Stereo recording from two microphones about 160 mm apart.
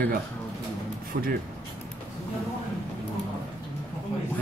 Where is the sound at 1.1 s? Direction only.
65° right (ahead or behind).